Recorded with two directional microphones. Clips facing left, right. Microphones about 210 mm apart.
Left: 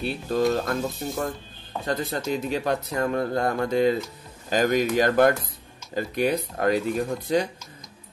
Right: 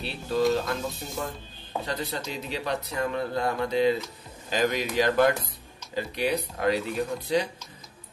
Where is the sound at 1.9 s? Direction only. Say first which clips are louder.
Left 8 dB; 50° left (ahead or behind).